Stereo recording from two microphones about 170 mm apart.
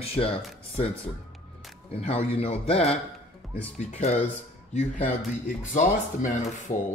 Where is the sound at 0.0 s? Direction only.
35° left (ahead or behind).